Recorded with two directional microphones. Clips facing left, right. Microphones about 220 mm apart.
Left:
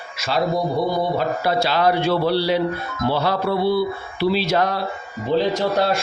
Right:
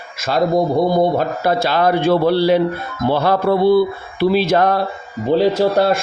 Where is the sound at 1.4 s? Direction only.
50° right (ahead or behind).